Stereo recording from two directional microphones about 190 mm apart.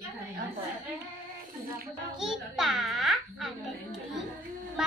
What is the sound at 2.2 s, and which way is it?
A child's voice, centre (ahead or behind).